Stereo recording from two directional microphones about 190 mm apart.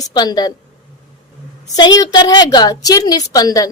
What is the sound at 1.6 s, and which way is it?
A woman's voice, 20° left (ahead or behind).